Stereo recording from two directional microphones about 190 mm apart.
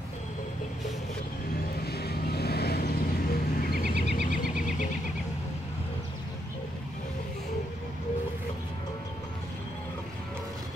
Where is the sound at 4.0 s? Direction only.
40° left (ahead or behind).